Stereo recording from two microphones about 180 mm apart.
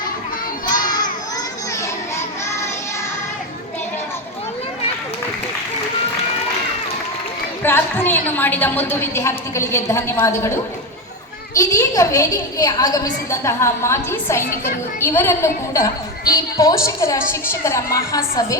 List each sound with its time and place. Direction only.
0.7 s crowd: 45° left (ahead or behind)
7.6 s a woman's voice: 10° left (ahead or behind)